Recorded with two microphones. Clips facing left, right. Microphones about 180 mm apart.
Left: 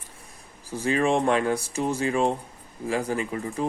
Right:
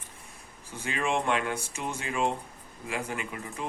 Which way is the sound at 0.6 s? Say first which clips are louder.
Left 8 dB; 35° left (ahead or behind).